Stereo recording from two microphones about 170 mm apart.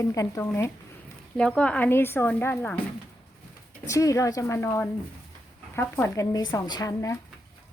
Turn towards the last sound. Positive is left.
turn(degrees=20)  # may be behind; listen again after turning